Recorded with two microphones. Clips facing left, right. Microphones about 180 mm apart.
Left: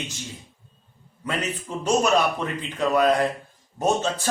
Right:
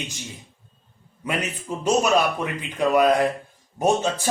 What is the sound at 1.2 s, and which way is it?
A man's voice, 15° right (ahead or behind).